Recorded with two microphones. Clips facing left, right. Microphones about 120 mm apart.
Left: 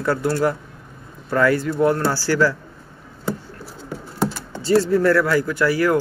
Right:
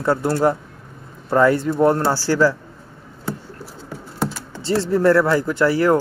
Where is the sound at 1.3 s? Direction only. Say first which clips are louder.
Right 2 dB; 20° right (ahead or behind).